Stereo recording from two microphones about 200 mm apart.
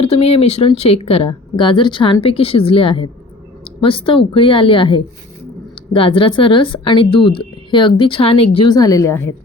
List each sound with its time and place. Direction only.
0.0 s a woman's voice: 30° left (ahead or behind); by 9.3 s 15° left (ahead or behind)